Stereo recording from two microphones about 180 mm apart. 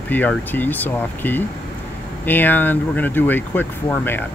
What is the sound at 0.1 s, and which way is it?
Speech, 10° left (ahead or behind).